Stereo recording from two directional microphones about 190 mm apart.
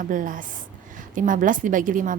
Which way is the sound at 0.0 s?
45° right (ahead or behind).